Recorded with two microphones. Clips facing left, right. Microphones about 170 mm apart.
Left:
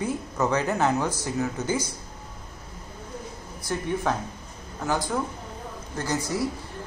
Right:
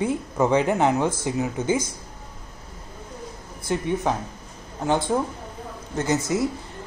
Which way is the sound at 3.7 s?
20° right (ahead or behind).